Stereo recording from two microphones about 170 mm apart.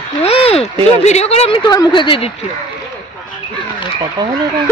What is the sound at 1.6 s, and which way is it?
Speech, 25° left (ahead or behind).